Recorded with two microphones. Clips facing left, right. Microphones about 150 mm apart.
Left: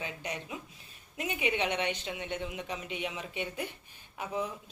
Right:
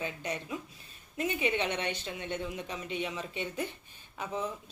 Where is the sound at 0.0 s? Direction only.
15° left (ahead or behind).